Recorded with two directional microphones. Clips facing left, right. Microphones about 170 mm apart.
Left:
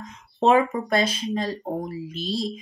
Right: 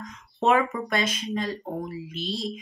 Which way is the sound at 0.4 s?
30° left (ahead or behind).